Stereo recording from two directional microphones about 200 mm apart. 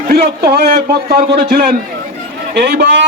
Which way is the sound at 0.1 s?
50° right (ahead or behind).